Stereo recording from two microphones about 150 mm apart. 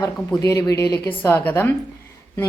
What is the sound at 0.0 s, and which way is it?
A woman's voice, 20° left (ahead or behind).